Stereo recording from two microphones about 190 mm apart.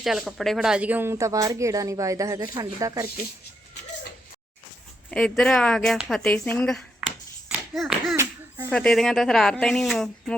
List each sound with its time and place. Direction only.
0.0 s speech: centre (ahead or behind); by 3.1 s 15° right (ahead or behind)
5.1 s speech: centre (ahead or behind)
7.4 s clapping: 5° right (ahead or behind)
8.1 s a sound: 15° right (ahead or behind)
8.7 s speech: 5° left (ahead or behind)